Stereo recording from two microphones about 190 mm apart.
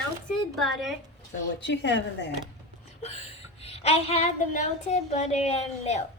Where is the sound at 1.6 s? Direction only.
65° left (ahead or behind).